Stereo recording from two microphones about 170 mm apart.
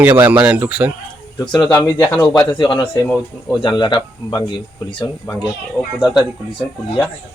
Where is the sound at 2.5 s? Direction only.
25° left (ahead or behind).